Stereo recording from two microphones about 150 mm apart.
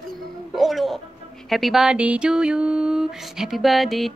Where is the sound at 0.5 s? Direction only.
Centre (ahead or behind).